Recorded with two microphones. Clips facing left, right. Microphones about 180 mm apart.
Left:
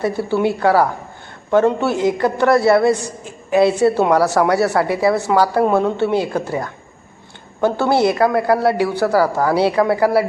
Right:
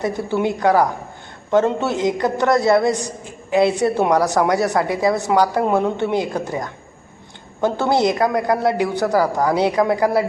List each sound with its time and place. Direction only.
0.0 s a man's voice: 20° right (ahead or behind)